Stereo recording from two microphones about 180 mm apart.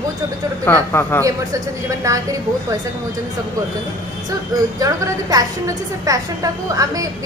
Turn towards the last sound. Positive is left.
turn(degrees=-20)  # may be behind; listen again after turning